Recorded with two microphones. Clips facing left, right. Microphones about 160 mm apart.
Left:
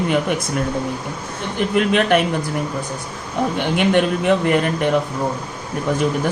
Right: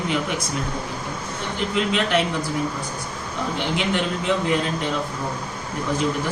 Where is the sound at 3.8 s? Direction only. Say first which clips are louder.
Left 7 dB; 60° left (ahead or behind).